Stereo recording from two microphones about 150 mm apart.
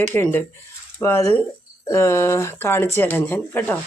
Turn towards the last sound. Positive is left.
turn(degrees=15)  # may be behind; listen again after turning